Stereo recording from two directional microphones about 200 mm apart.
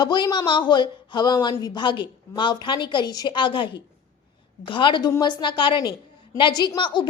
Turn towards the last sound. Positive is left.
turn(degrees=25)  # may be behind; listen again after turning